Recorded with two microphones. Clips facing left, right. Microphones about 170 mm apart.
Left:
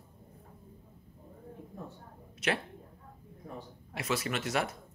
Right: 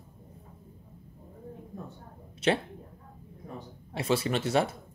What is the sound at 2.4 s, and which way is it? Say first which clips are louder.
Speech: right 6 dB; 30° right (ahead or behind).